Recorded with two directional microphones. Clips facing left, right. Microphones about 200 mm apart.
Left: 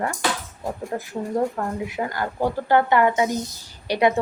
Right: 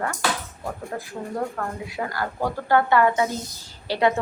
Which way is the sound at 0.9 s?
25° left (ahead or behind).